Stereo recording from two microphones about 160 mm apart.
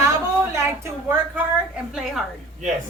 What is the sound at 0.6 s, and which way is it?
Speech, 15° right (ahead or behind).